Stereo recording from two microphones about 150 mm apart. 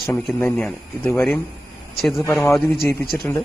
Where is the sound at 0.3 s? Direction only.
10° left (ahead or behind).